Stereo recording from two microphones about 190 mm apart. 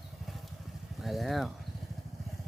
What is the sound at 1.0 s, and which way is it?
Vehicle, centre (ahead or behind).